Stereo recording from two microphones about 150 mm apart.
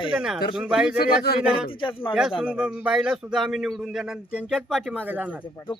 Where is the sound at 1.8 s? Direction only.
35° left (ahead or behind).